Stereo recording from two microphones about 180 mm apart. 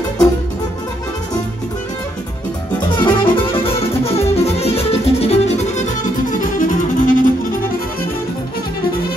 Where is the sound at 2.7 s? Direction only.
25° left (ahead or behind).